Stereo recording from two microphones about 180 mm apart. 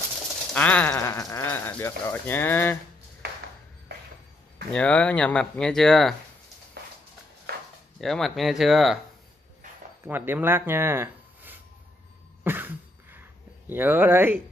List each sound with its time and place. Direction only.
0.5 s speech: 10° left (ahead or behind)
4.7 s speech: 5° left (ahead or behind)
6.8 s a sound: 60° right (ahead or behind)
8.0 s speech: centre (ahead or behind)
10.0 s speech: 10° right (ahead or behind)
12.4 s a sound: 10° right (ahead or behind)